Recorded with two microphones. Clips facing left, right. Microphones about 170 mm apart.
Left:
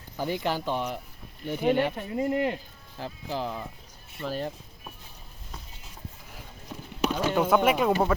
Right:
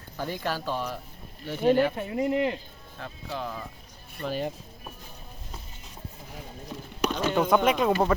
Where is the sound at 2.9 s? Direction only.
30° left (ahead or behind).